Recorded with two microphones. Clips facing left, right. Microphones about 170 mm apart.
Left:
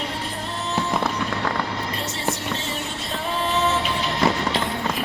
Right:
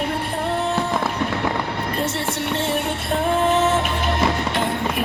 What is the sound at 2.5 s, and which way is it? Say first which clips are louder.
Music: right 7 dB; 55° right (ahead or behind).